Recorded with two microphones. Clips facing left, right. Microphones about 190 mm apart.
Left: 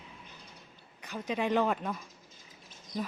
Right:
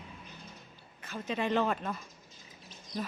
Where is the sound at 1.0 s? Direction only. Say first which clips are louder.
Left 1 dB; 15° left (ahead or behind).